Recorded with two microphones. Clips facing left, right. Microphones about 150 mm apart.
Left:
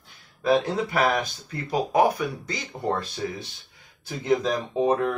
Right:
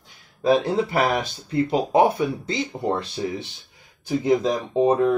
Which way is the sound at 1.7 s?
25° right (ahead or behind).